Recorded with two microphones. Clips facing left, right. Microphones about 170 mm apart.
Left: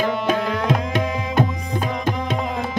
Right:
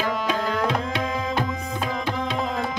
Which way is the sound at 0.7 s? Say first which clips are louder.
Left 4 dB; 45° left (ahead or behind).